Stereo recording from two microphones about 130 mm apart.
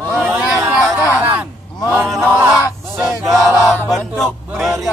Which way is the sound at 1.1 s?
10° right (ahead or behind).